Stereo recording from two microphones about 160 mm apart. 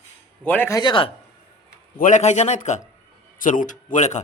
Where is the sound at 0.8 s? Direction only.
30° left (ahead or behind).